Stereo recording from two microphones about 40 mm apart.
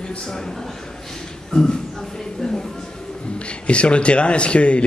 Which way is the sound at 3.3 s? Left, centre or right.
Left.